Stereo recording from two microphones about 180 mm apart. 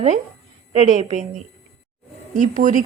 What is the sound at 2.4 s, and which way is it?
Speech, 45° right (ahead or behind).